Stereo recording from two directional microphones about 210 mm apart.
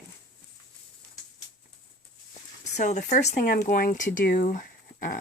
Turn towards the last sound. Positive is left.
turn(degrees=40)  # may be behind; listen again after turning